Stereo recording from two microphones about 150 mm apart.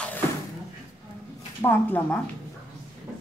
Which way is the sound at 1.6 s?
15° left (ahead or behind).